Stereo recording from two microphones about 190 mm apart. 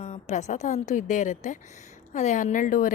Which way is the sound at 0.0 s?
35° left (ahead or behind).